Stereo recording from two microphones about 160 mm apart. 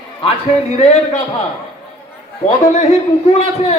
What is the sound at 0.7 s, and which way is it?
Speech, 40° left (ahead or behind).